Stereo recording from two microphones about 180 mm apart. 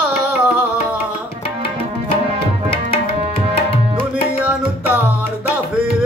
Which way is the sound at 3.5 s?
30° left (ahead or behind).